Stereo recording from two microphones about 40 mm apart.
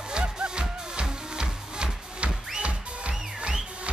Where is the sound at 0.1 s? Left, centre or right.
Right.